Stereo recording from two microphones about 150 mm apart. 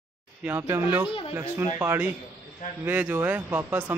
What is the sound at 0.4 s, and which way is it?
A man's voice, 15° right (ahead or behind).